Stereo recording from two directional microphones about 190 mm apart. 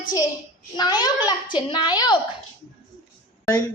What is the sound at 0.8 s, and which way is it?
A woman's voice, 20° left (ahead or behind).